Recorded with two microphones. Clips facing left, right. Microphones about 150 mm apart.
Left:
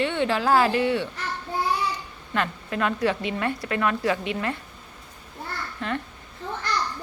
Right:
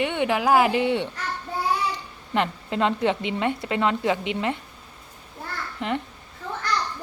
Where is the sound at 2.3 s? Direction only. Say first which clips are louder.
Right 2 dB; 20° right (ahead or behind).